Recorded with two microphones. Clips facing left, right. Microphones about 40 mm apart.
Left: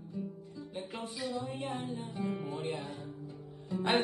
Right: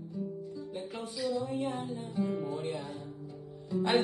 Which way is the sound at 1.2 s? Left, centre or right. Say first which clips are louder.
Right 6 dB; left.